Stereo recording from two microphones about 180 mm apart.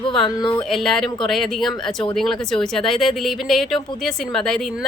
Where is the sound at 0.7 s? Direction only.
Centre (ahead or behind).